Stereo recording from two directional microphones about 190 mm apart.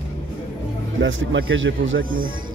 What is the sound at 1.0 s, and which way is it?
Speech, 85° right.